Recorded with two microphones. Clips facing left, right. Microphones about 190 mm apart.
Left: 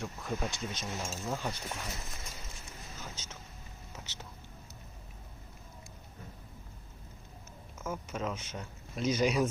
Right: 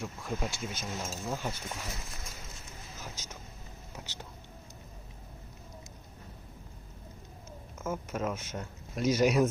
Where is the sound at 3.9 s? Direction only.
10° right (ahead or behind).